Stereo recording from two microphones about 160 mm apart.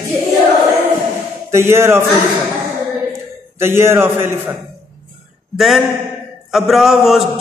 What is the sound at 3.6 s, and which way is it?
Mantra, 15° right (ahead or behind).